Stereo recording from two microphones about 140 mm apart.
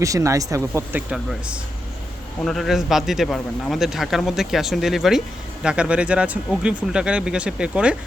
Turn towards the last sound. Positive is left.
turn(degrees=-5)  # may be behind; listen again after turning